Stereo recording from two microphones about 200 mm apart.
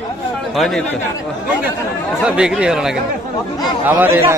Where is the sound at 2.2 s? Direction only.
5° right (ahead or behind).